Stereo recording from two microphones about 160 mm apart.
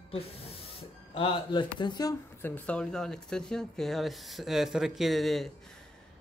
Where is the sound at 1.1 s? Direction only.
30° left (ahead or behind).